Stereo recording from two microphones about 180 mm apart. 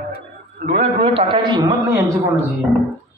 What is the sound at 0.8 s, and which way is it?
Speech, 35° right (ahead or behind).